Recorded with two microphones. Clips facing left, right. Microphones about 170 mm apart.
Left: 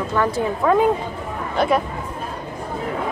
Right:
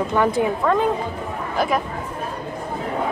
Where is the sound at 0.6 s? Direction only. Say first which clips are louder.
Left 2 dB; 5° left (ahead or behind).